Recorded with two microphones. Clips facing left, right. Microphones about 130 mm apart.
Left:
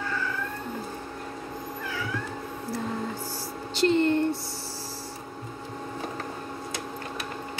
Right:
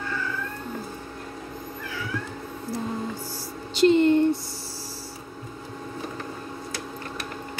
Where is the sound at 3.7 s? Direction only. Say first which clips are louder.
Right 5 dB; 15° right (ahead or behind).